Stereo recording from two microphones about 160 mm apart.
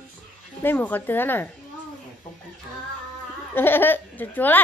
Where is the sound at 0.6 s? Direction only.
10° left (ahead or behind).